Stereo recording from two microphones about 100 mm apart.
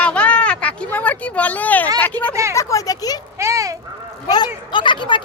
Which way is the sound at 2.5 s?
30° left (ahead or behind).